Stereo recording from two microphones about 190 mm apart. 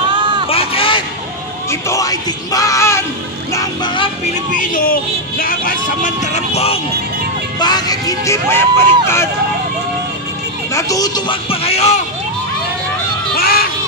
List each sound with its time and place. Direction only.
0.1 s a sound: 25° right (ahead or behind)
0.5 s a sound: 30° left (ahead or behind)
1.7 s speech: 15° left (ahead or behind)
3.5 s vehicle: 25° left (ahead or behind)
4.5 s vehicle: 45° left (ahead or behind)
7.5 s speech: 20° left (ahead or behind)
10.7 s speech: 15° left (ahead or behind); by 12.0 s 35° left (ahead or behind)
13.3 s music: 55° left (ahead or behind)